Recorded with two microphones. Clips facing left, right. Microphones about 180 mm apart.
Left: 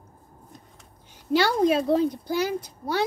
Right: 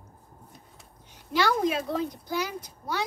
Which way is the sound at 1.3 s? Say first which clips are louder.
Left 5 dB; 30° left (ahead or behind).